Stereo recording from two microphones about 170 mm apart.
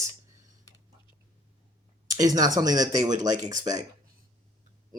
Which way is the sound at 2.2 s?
20° right (ahead or behind).